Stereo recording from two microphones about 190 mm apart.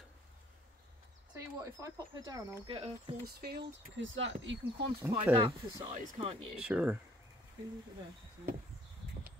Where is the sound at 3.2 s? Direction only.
55° right (ahead or behind).